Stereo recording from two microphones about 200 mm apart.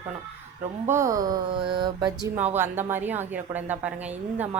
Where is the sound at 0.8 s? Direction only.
15° right (ahead or behind).